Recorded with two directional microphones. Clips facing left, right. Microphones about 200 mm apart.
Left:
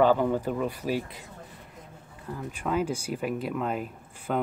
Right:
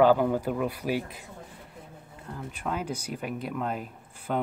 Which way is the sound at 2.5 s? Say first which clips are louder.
Left 4 dB; 5° left (ahead or behind).